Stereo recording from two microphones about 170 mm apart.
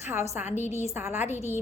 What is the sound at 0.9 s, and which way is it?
Speech, 15° right (ahead or behind).